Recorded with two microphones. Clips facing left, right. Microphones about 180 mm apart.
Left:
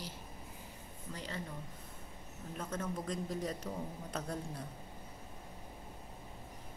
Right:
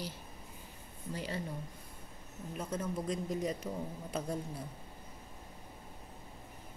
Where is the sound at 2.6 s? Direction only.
5° right (ahead or behind).